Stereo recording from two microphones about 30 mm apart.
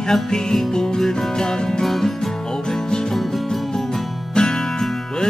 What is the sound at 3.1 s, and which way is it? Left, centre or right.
Music, centre.